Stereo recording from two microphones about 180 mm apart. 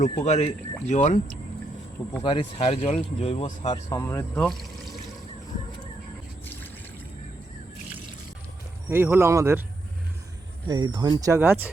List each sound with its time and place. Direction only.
0.0 s speech: 40° left (ahead or behind)
2.2 s speech: 30° left (ahead or behind)
3.7 s speech: 15° left (ahead or behind)
8.9 s speech: 15° right (ahead or behind)
10.7 s speech: 25° right (ahead or behind)